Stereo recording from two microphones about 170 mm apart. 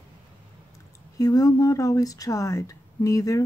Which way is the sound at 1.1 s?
20° left (ahead or behind).